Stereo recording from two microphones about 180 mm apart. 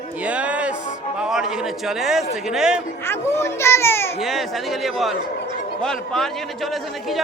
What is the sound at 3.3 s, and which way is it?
Speech, 15° left (ahead or behind).